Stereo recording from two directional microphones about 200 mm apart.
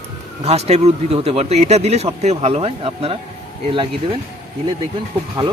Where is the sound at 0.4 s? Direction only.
30° right (ahead or behind).